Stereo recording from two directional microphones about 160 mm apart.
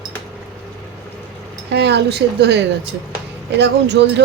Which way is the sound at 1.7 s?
90° right.